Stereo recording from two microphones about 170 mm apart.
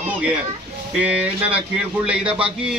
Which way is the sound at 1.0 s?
5° right (ahead or behind).